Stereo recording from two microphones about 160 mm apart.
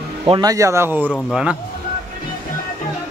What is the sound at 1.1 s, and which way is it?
Speech, centre (ahead or behind).